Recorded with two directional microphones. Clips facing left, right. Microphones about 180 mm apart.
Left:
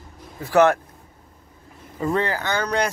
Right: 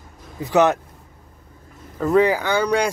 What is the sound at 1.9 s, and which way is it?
Speech, 5° right (ahead or behind).